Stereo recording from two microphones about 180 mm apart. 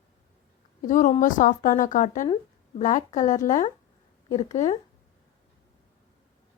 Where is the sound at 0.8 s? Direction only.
45° left (ahead or behind).